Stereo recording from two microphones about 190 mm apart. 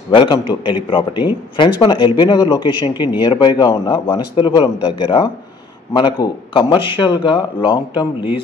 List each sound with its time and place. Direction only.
0.1 s a man's voice: 25° left (ahead or behind)